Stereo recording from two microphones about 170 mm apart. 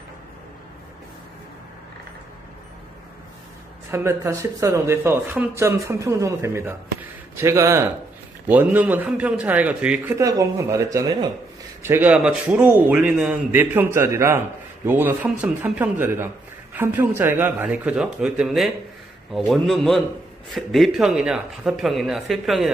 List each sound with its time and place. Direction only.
3.9 s a man's voice: 15° right (ahead or behind)
10.1 s speech: 20° right (ahead or behind)
11.8 s a man's voice: 10° right (ahead or behind)